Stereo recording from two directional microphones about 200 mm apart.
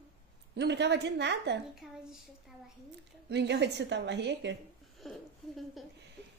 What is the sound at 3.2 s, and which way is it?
A woman's voice, 55° right (ahead or behind).